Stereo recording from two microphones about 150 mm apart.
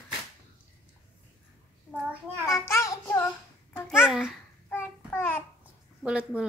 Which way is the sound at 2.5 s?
20° left (ahead or behind).